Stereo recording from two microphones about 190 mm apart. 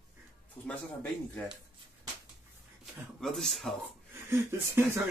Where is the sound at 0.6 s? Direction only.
5° left (ahead or behind).